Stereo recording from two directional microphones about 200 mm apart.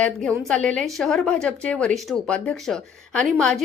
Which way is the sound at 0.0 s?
5° left (ahead or behind).